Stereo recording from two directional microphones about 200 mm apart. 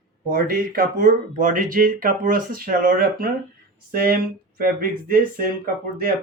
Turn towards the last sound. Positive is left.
turn(degrees=-45)  # may be behind; listen again after turning